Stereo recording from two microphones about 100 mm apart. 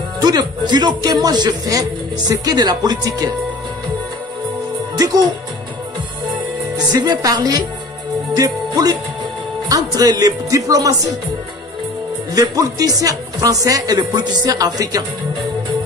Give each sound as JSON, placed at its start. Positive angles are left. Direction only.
{"t": 0.2, "sound": "speech", "side_deg": -45}
{"t": 4.9, "sound": "speech", "side_deg": -40}
{"t": 6.9, "sound": "speech", "side_deg": -45}
{"t": 8.3, "sound": "music", "side_deg": -40}
{"t": 9.7, "sound": "speech", "side_deg": -40}
{"t": 12.4, "sound": "speech", "side_deg": -35}